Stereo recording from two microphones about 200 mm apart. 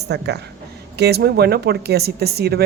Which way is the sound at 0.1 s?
55° right (ahead or behind).